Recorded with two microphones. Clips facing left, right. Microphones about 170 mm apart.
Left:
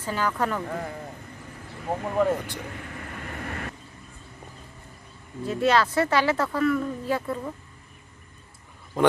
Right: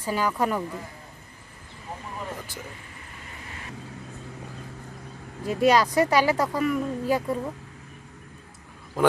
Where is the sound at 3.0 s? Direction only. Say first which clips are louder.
Left 8 dB; 65° left (ahead or behind).